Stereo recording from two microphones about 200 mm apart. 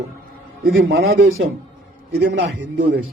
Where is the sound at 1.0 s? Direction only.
80° right.